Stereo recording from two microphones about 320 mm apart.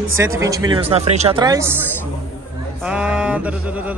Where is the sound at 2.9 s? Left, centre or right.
Centre.